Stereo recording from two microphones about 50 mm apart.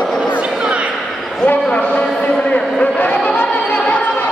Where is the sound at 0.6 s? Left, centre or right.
Right.